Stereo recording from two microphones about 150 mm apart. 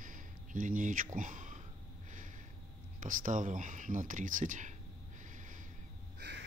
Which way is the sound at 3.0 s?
60° right (ahead or behind).